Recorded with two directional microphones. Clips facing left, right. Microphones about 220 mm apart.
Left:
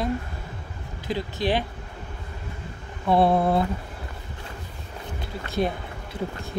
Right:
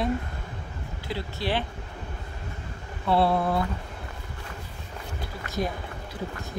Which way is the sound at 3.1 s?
20° left (ahead or behind).